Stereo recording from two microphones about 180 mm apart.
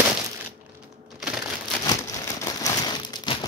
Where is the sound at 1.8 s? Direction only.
20° left (ahead or behind).